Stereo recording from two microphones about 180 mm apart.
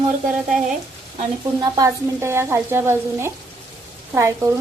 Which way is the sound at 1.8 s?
15° right (ahead or behind).